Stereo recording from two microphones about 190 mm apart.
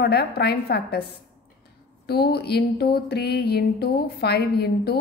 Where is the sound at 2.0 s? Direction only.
55° left (ahead or behind).